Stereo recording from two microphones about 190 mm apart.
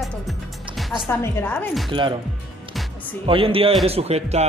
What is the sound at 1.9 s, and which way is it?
Speech, 25° right (ahead or behind).